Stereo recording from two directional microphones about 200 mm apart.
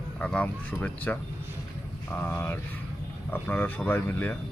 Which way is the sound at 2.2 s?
10° left (ahead or behind).